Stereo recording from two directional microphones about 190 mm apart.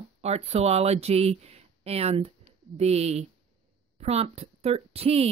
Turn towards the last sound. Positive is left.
turn(degrees=-30)  # may be behind; listen again after turning